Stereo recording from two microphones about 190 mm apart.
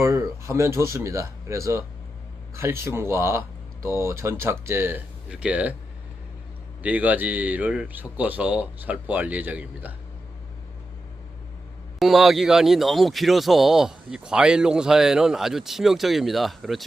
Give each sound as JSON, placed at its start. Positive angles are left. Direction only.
{"t": 0.0, "sound": "a man's voice", "side_deg": -15}
{"t": 6.8, "sound": "a man's voice", "side_deg": -10}
{"t": 11.9, "sound": "speech", "side_deg": 0}